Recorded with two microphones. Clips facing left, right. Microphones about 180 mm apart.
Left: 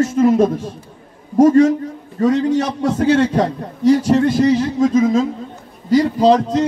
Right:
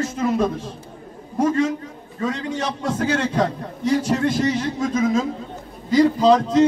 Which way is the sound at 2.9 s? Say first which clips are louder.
Left 7 dB; 35° left (ahead or behind).